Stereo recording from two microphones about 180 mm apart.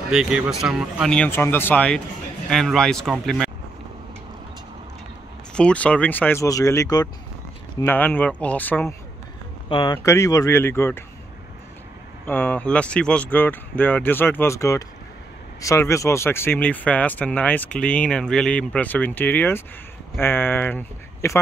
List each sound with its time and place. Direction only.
0.1 s speech: 5° right (ahead or behind)
5.5 s speech: 5° left (ahead or behind)
9.7 s speech: 25° left (ahead or behind)
12.3 s speech: 10° left (ahead or behind)